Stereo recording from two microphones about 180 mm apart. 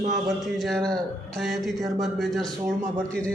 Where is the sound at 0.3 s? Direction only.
Centre (ahead or behind).